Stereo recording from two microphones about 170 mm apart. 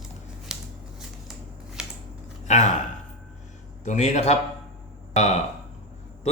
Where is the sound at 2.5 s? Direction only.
45° left (ahead or behind).